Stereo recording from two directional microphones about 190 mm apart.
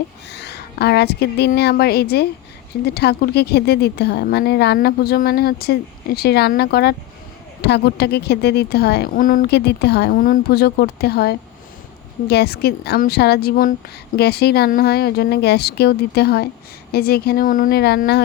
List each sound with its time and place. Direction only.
0.3 s a woman's voice: 60° left (ahead or behind)